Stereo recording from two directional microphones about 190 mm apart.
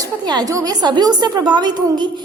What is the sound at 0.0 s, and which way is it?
A woman's voice, 20° right (ahead or behind).